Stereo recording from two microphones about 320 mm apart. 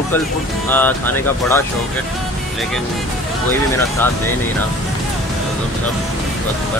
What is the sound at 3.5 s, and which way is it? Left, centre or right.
Speech, centre.